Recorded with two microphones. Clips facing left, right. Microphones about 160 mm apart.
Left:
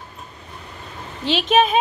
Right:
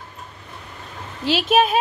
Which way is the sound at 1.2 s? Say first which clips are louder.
Even; 5° right (ahead or behind).